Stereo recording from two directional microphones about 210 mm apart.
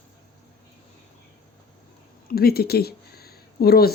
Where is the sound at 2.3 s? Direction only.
45° left (ahead or behind).